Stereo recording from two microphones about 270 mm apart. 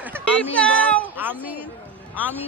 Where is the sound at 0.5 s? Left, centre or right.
Centre.